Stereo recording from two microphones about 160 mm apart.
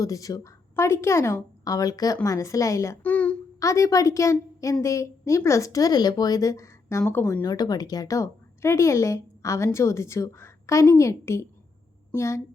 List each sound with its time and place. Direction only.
0.0 s a woman's voice: 20° left (ahead or behind)
3.6 s a woman's voice: 20° left (ahead or behind)
7.4 s a woman's voice: 25° left (ahead or behind)